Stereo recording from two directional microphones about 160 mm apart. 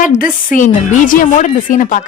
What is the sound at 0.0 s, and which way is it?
A woman's voice, 55° left (ahead or behind).